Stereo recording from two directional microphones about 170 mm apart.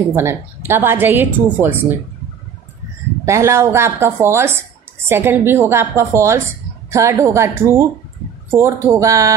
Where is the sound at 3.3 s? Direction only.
15° right (ahead or behind).